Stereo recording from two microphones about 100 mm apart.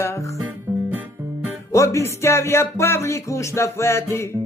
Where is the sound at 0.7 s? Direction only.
20° right (ahead or behind).